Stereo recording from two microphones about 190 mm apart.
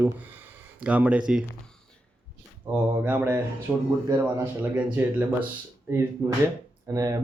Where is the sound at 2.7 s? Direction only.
10° right (ahead or behind).